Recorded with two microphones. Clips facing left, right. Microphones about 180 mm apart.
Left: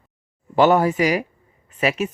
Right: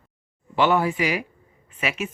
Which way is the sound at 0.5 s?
40° left (ahead or behind).